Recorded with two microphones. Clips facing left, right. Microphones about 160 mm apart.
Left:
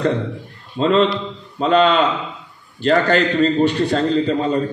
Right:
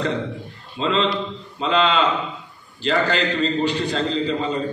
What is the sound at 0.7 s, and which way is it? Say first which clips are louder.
A man's voice: left 5 dB; 50° left (ahead or behind).